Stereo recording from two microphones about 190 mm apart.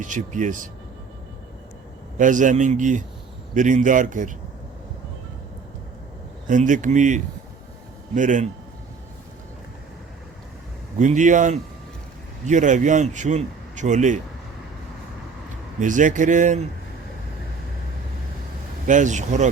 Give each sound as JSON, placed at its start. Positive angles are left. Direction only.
{"t": 0.0, "sound": "a man's voice", "side_deg": -40}
{"t": 2.1, "sound": "a man's voice", "side_deg": -40}
{"t": 6.5, "sound": "a man's voice", "side_deg": -40}
{"t": 11.0, "sound": "a man's voice", "side_deg": -40}
{"t": 15.8, "sound": "a man's voice", "side_deg": -40}
{"t": 18.9, "sound": "a man's voice", "side_deg": -40}